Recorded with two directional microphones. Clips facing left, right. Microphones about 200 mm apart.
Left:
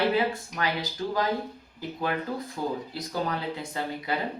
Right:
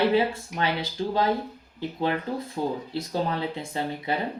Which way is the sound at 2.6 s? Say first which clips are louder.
Right 4 dB; 25° right (ahead or behind).